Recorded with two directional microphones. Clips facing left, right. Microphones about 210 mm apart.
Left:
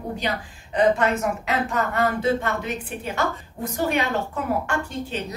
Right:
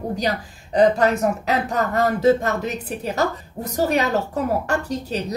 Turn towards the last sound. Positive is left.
turn(degrees=-40)  # may be behind; listen again after turning